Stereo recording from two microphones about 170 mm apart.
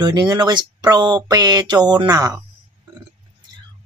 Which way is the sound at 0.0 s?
25° right (ahead or behind).